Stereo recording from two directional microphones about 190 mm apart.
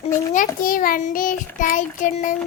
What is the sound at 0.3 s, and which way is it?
Child singing, 45° left (ahead or behind).